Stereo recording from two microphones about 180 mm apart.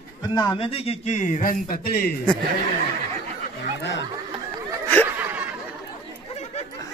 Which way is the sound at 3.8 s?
75° left (ahead or behind).